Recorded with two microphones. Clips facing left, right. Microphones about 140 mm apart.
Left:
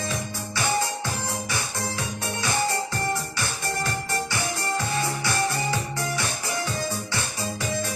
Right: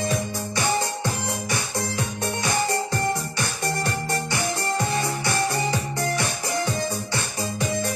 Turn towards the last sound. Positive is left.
turn(degrees=-20)  # may be behind; listen again after turning